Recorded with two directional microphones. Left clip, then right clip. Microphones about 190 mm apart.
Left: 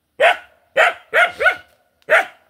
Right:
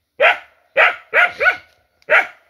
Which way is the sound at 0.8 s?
10° left (ahead or behind).